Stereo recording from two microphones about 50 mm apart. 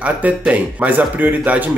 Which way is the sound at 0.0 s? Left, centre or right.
Right.